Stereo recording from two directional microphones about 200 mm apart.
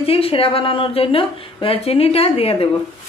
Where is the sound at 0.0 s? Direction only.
30° left (ahead or behind).